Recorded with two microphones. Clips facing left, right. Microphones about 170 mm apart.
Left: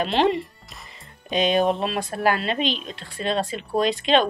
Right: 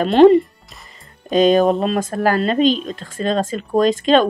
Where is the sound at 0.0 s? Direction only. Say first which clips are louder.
Right 11 dB; 45° right (ahead or behind).